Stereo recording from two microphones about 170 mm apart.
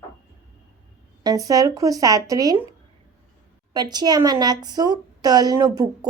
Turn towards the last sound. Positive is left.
turn(degrees=-25)  # may be behind; listen again after turning